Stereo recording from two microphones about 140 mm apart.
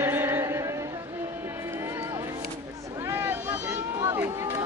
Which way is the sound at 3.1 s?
15° right (ahead or behind).